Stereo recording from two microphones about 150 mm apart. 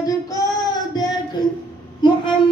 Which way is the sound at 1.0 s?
25° left (ahead or behind).